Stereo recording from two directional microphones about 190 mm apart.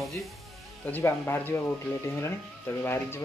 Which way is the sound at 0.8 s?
10° left (ahead or behind).